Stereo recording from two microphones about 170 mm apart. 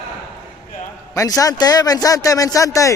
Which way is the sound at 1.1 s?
20° left (ahead or behind).